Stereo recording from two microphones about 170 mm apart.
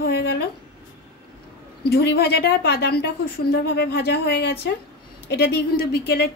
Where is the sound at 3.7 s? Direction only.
90° left.